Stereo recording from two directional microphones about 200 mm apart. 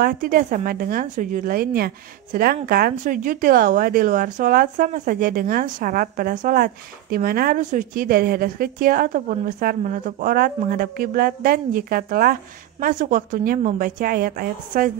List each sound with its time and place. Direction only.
0.0 s speech: 45° right (ahead or behind)